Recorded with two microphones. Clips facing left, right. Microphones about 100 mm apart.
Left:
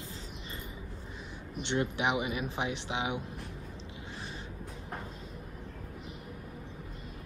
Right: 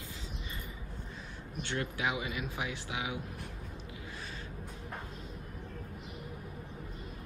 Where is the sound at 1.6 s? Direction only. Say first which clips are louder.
Left 4 dB; 20° left (ahead or behind).